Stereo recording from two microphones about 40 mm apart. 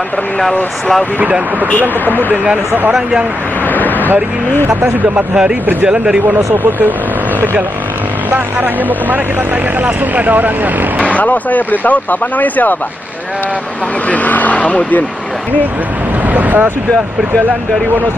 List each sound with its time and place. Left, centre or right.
3.6 s a sound: left
5.9 s speech: centre
6.2 s speech: right
8.3 s speech: right
11.1 s speech: left
14.0 s speech: left
16.3 s speech: right